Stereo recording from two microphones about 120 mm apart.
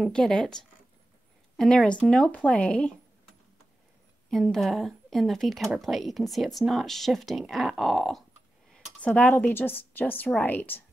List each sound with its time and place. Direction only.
0.0 s speech: 5° left (ahead or behind)
1.6 s speech: 5° left (ahead or behind)
4.3 s speech: centre (ahead or behind)
8.7 s speech: 10° left (ahead or behind)